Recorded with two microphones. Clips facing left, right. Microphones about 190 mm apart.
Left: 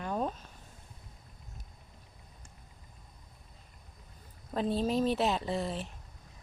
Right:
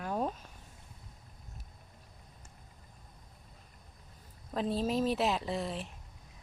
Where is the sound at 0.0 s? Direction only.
5° right (ahead or behind).